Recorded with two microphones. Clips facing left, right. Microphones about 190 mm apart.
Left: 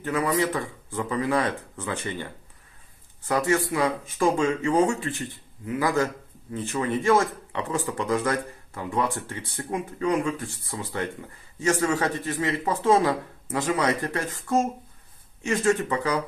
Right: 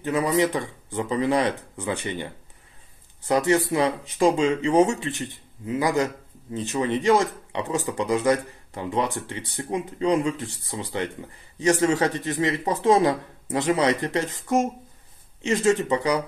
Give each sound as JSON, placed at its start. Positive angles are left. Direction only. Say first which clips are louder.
{"t": 0.0, "sound": "speech", "louder": "right 3 dB", "side_deg": -20}
{"t": 3.3, "sound": "speech", "louder": "right 3 dB", "side_deg": -20}